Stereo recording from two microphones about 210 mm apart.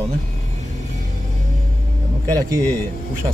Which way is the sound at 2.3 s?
15° right (ahead or behind).